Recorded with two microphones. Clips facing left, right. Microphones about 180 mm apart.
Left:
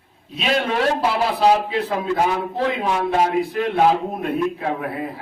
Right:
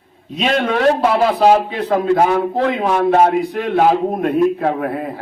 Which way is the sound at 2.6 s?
60° right (ahead or behind).